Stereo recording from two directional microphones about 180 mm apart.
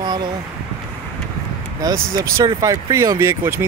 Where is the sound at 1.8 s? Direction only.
15° right (ahead or behind).